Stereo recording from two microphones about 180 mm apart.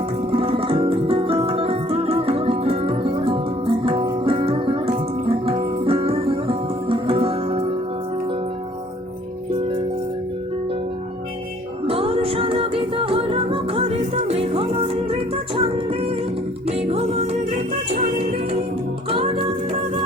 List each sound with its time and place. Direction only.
0.3 s music: 30° right (ahead or behind)
11.9 s music: 30° right (ahead or behind)